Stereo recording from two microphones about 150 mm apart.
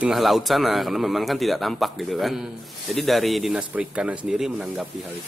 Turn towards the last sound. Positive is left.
turn(degrees=-5)  # may be behind; listen again after turning